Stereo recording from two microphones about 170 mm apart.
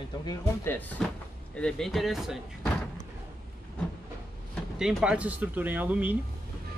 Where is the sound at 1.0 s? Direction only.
5° left (ahead or behind).